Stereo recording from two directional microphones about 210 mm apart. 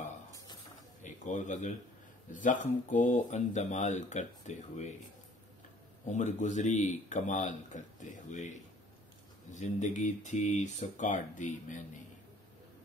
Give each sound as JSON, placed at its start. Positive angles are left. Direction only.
{"t": 1.0, "sound": "a sound", "side_deg": 35}
{"t": 2.3, "sound": "speech", "side_deg": 40}
{"t": 6.0, "sound": "speech", "side_deg": 35}